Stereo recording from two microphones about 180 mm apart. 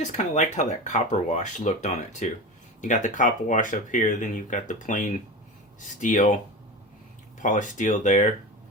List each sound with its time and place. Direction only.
0.0 s speech: 45° left (ahead or behind)
7.4 s speech: 45° left (ahead or behind)